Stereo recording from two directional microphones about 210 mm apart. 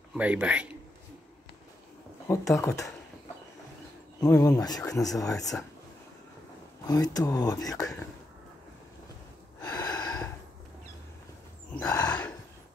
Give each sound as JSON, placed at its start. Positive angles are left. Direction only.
{"t": 0.1, "sound": "a man's voice", "side_deg": -5}
{"t": 2.5, "sound": "speech", "side_deg": 15}
{"t": 4.2, "sound": "speech", "side_deg": 15}
{"t": 6.9, "sound": "speech", "side_deg": 15}
{"t": 9.6, "sound": "gasp", "side_deg": 20}
{"t": 11.7, "sound": "a sound", "side_deg": 15}